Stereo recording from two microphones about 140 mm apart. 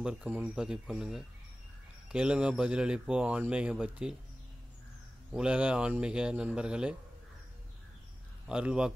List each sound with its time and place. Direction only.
0.0 s speech: 10° right (ahead or behind)
5.3 s speech: 5° right (ahead or behind)
8.5 s speech: 5° right (ahead or behind)